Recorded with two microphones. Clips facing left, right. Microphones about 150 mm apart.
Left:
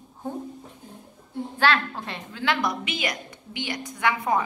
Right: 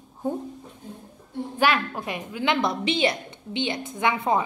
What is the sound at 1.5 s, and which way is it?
A woman's voice, 15° right (ahead or behind).